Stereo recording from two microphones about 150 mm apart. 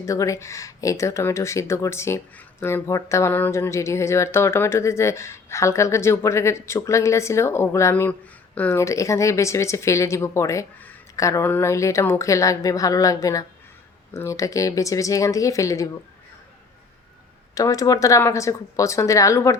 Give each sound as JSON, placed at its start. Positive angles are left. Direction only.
{"t": 0.0, "sound": "speech", "side_deg": 20}
{"t": 17.5, "sound": "speech", "side_deg": 25}